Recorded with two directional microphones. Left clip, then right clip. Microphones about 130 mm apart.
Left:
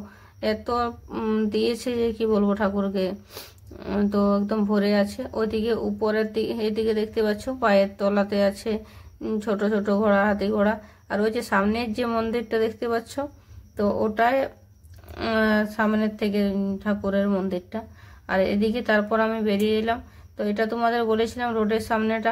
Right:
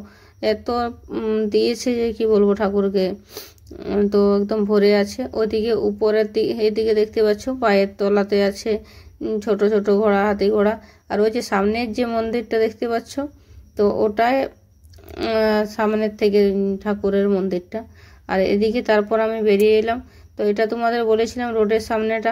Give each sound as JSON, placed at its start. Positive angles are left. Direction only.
{"t": 0.4, "sound": "a woman's voice", "side_deg": -25}
{"t": 1.5, "sound": "a woman's voice", "side_deg": -25}
{"t": 3.3, "sound": "speech", "side_deg": -15}
{"t": 4.1, "sound": "a woman's voice", "side_deg": -25}
{"t": 9.2, "sound": "a woman's voice", "side_deg": -15}
{"t": 9.5, "sound": "a woman's voice", "side_deg": -25}